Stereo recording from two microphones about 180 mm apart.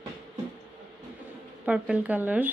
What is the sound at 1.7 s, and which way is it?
Speech, 5° right (ahead or behind).